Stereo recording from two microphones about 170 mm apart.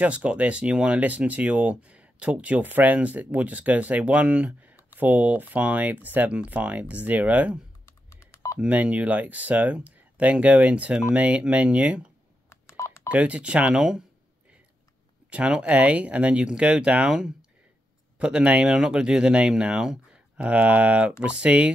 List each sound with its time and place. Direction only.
0.0 s speech: 5° right (ahead or behind)
8.1 s telephone dialing: 15° left (ahead or behind)
8.5 s speech: 10° right (ahead or behind)
12.4 s telephone dialing: 15° left (ahead or behind)
13.1 s speech: 10° right (ahead or behind)
15.2 s speech: 5° right (ahead or behind)